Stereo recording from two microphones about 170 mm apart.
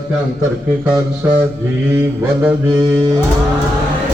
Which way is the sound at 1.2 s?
10° right (ahead or behind).